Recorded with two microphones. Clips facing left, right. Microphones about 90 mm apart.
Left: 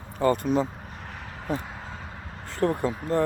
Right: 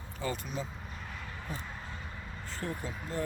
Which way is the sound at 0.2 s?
55° left (ahead or behind).